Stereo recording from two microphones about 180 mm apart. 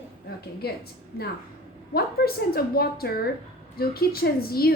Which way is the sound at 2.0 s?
60° left (ahead or behind).